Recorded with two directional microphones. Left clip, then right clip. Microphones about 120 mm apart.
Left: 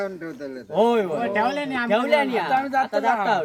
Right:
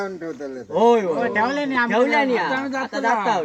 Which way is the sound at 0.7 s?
35° left (ahead or behind).